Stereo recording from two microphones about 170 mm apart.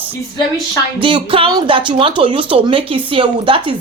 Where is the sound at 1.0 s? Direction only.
30° right (ahead or behind).